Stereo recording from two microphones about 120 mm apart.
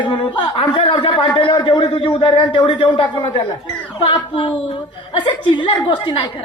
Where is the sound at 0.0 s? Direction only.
40° left (ahead or behind).